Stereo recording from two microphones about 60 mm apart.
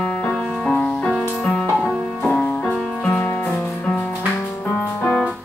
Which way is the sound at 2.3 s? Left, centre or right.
Centre.